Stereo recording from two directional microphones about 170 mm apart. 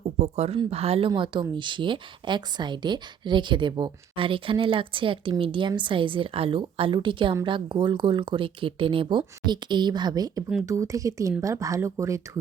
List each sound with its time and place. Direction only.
0.2 s speech: 40° right (ahead or behind); by 12.4 s 20° right (ahead or behind)